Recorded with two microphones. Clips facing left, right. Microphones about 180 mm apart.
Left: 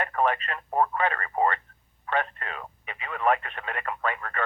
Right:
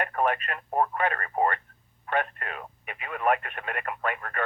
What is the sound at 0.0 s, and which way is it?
Speech, 50° right (ahead or behind).